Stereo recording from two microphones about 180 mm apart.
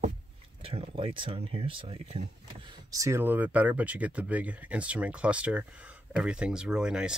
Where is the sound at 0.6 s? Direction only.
30° right (ahead or behind).